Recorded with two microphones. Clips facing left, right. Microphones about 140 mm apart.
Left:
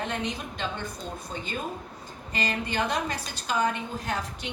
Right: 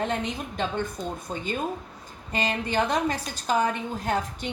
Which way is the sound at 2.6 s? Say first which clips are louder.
Right 6 dB; 45° right (ahead or behind).